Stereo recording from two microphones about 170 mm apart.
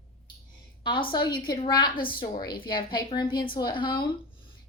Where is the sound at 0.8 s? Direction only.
30° left (ahead or behind).